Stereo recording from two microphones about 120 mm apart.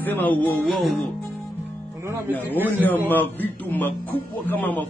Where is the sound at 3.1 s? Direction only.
15° left (ahead or behind).